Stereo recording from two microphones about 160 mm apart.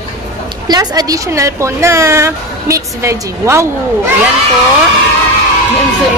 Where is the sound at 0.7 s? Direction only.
25° right (ahead or behind).